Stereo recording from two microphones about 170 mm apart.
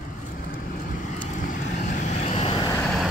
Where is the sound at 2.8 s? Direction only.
5° right (ahead or behind).